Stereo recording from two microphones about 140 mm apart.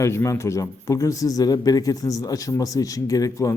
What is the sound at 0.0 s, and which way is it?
A man's voice, 20° left (ahead or behind).